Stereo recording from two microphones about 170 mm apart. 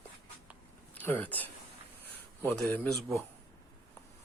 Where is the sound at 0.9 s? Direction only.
10° left (ahead or behind).